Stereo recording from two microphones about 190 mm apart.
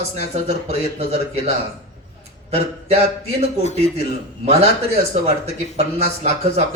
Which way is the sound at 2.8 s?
35° right (ahead or behind).